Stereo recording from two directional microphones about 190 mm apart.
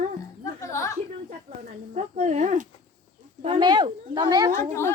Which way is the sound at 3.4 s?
25° right (ahead or behind).